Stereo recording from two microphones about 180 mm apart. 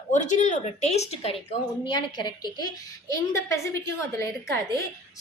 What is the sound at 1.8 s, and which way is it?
A woman's voice, 25° left (ahead or behind).